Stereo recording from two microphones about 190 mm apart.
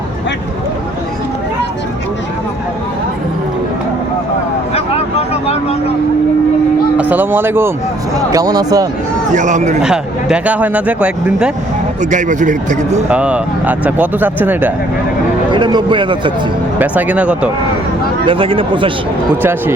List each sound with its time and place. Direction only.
5.3 s vehicle: 30° left (ahead or behind)
6.9 s speech: 10° right (ahead or behind)
9.3 s speech: 40° right (ahead or behind)
9.8 s speech: 5° right (ahead or behind)
12.1 s speech: 40° right (ahead or behind)
13.1 s speech: 5° right (ahead or behind)
15.4 s speech: 25° right (ahead or behind)
16.7 s speech: 10° right (ahead or behind)
18.3 s speech: 30° right (ahead or behind)
19.4 s speech: 10° right (ahead or behind)